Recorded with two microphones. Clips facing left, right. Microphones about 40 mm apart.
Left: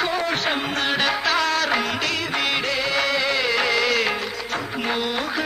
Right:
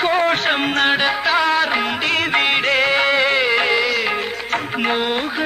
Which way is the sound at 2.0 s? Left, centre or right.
Right.